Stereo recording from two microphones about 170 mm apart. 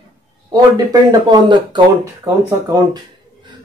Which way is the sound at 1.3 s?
25° right (ahead or behind).